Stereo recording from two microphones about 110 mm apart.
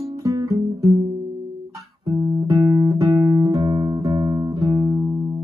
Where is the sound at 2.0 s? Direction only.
45° right (ahead or behind).